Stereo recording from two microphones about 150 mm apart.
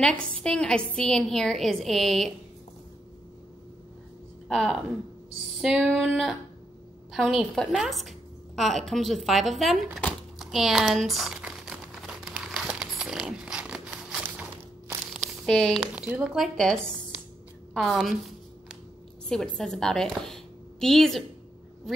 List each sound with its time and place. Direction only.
0.0 s a woman's voice: 5° left (ahead or behind)
4.5 s a woman's voice: centre (ahead or behind)
9.9 s crumpling: centre (ahead or behind)
15.1 s a sound: 5° left (ahead or behind)
15.9 s a woman's voice: 10° right (ahead or behind)
19.2 s a woman's voice: 5° left (ahead or behind)